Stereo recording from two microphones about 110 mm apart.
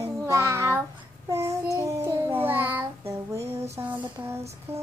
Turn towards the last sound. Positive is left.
turn(degrees=-25)  # may be behind; listen again after turning